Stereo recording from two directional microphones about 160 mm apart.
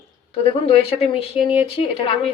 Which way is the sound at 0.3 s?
35° left (ahead or behind).